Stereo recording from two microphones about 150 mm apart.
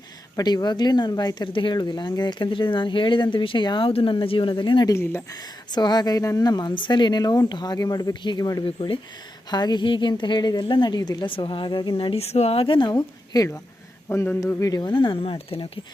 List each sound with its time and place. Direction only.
0.3 s speech: 30° left (ahead or behind)